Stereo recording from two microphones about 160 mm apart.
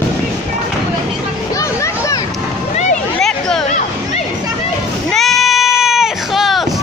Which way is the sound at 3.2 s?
5° left (ahead or behind).